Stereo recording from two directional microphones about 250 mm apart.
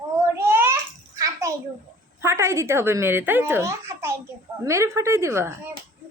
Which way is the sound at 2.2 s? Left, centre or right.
Centre.